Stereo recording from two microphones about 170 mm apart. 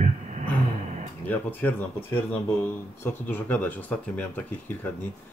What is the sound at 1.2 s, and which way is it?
Speech, 10° left (ahead or behind).